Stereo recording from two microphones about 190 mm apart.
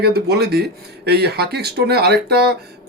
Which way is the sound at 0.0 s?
55° right (ahead or behind).